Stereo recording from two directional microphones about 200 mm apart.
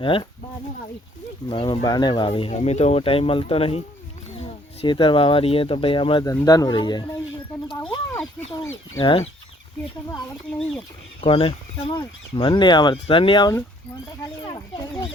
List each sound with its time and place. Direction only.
0.0 s speech: 25° left (ahead or behind)
1.5 s speech: 25° left (ahead or behind)
9.0 s speech: 30° left (ahead or behind)
10.8 s speech: 25° left (ahead or behind)